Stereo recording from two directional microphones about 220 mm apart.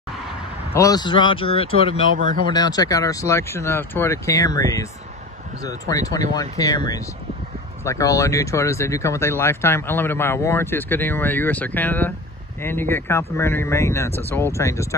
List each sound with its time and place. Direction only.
0.7 s speech: 15° left (ahead or behind)
2.1 s speech: 40° right (ahead or behind)
2.4 s speech: 20° left (ahead or behind)